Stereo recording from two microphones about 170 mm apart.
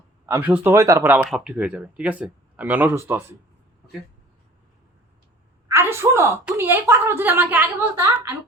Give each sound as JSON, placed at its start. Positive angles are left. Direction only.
{"t": 0.3, "sound": "speech", "side_deg": -10}
{"t": 5.6, "sound": "a sound", "side_deg": -15}
{"t": 6.4, "sound": "speech", "side_deg": -15}